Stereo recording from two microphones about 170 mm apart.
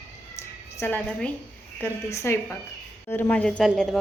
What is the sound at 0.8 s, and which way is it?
A woman's voice, 10° left (ahead or behind).